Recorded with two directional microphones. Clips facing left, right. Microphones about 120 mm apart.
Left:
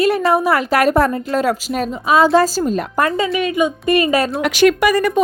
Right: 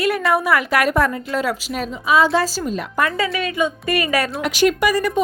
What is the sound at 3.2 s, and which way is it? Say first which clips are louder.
A woman's voice: left 4 dB; 20° left (ahead or behind).